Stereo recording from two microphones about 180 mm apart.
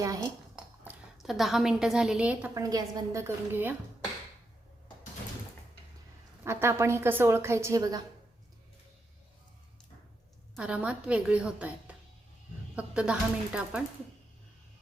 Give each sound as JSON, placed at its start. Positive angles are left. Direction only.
{"t": 0.0, "sound": "dishes", "side_deg": -20}
{"t": 0.5, "sound": "a woman's voice", "side_deg": -5}
{"t": 2.6, "sound": "a woman's voice", "side_deg": -20}
{"t": 6.4, "sound": "a woman's voice", "side_deg": -15}
{"t": 10.5, "sound": "a woman's voice", "side_deg": -5}